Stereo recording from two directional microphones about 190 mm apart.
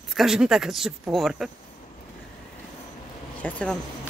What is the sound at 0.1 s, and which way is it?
A woman's voice, centre (ahead or behind).